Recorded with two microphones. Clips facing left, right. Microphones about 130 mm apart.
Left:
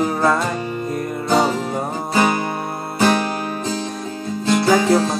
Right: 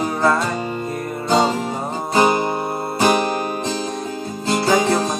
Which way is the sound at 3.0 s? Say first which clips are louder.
Even; 15° right (ahead or behind).